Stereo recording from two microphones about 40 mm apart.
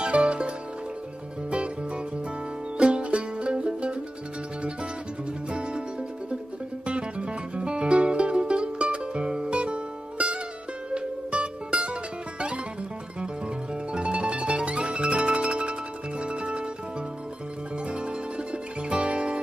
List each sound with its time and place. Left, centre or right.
0.0 s music: right
2.8 s music: right
5.5 s music: right
6.9 s music: right
13.9 s music: right
17.8 s music: right